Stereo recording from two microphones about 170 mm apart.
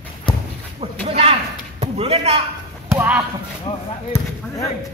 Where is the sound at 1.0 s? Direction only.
35° right (ahead or behind).